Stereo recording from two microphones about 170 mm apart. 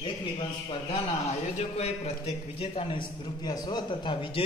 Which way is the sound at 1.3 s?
40° left (ahead or behind).